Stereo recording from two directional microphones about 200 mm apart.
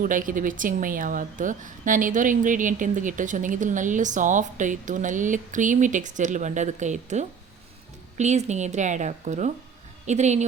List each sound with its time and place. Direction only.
0.0 s speech: 40° right (ahead or behind)